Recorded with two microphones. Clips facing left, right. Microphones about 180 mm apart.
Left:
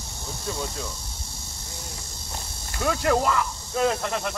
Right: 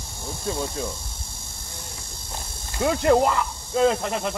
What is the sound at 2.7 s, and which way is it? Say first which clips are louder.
Speech: right 4 dB; 25° right (ahead or behind).